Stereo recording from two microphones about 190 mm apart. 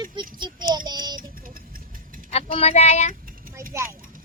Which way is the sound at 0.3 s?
25° right (ahead or behind).